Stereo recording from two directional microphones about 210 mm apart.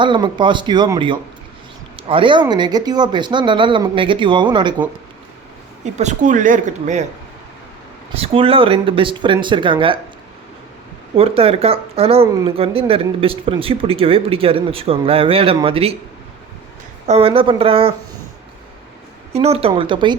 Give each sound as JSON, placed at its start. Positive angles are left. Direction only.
{"t": 0.0, "sound": "speech", "side_deg": -20}
{"t": 5.8, "sound": "speech", "side_deg": -35}
{"t": 8.1, "sound": "speech", "side_deg": -25}
{"t": 11.2, "sound": "speech", "side_deg": -25}
{"t": 12.2, "sound": "speech", "side_deg": -15}
{"t": 17.1, "sound": "speech", "side_deg": -25}
{"t": 19.3, "sound": "speech", "side_deg": -30}